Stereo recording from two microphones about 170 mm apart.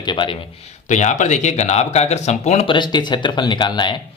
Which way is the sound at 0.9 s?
45° left (ahead or behind).